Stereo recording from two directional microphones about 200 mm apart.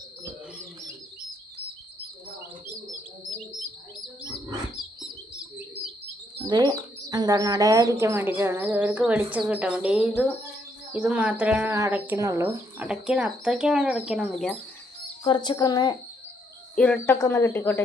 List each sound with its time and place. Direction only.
6.5 s speech: 20° right (ahead or behind); by 14.5 s centre (ahead or behind)
15.2 s speech: 20° left (ahead or behind)
16.7 s speech: 5° left (ahead or behind)